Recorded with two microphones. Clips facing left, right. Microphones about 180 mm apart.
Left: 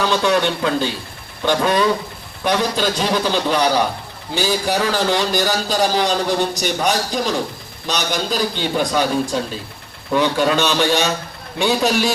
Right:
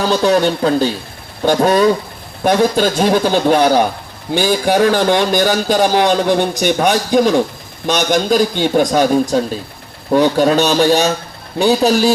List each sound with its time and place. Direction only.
0.0 s a man's voice: 40° right (ahead or behind)